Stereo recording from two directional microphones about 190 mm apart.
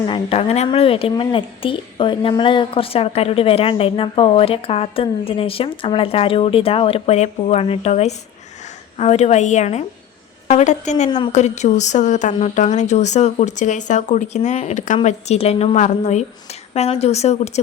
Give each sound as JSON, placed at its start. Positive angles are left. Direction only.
{"t": 0.0, "sound": "speech", "side_deg": 30}